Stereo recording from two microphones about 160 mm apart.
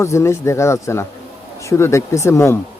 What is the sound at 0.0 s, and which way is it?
Speech, 15° left (ahead or behind).